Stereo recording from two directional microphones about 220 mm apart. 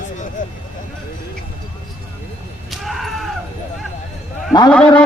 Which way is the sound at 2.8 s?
Centre (ahead or behind).